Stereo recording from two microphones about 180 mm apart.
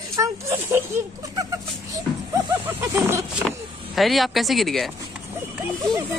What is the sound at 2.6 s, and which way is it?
Speech, 15° right (ahead or behind).